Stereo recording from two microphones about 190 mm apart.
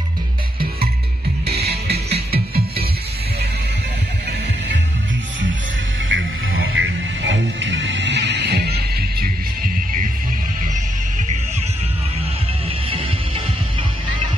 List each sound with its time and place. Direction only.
1.5 s music: 60° right (ahead or behind)
6.0 s music: 90° right; by 9.3 s 55° right (ahead or behind)